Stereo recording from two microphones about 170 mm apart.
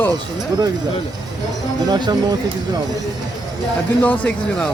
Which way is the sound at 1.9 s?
25° right (ahead or behind).